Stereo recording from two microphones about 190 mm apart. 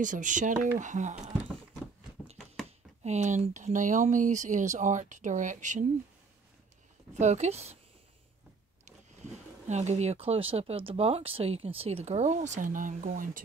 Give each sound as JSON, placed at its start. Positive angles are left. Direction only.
{"t": 0.0, "sound": "speech", "side_deg": -40}
{"t": 3.0, "sound": "speech", "side_deg": -35}
{"t": 7.2, "sound": "speech", "side_deg": -35}
{"t": 9.7, "sound": "speech", "side_deg": -35}